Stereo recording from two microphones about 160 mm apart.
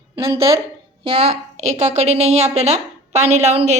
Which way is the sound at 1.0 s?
35° right (ahead or behind).